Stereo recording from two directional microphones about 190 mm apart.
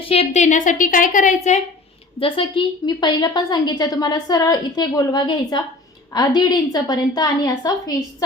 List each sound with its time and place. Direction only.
0.0 s a woman's voice: 30° left (ahead or behind)
2.1 s a woman's voice: 25° left (ahead or behind)